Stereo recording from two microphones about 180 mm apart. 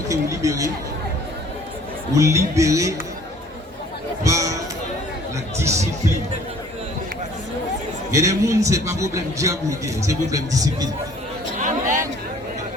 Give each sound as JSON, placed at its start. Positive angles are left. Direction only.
{"t": 0.1, "sound": "speech", "side_deg": -15}
{"t": 2.1, "sound": "a man's voice", "side_deg": -15}
{"t": 4.2, "sound": "a man's voice", "side_deg": -15}
{"t": 5.5, "sound": "a man's voice", "side_deg": -15}
{"t": 8.1, "sound": "a man's voice", "side_deg": -15}
{"t": 11.6, "sound": "chatter", "side_deg": -45}